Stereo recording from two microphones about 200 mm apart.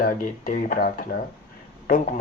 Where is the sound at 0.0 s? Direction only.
45° left (ahead or behind).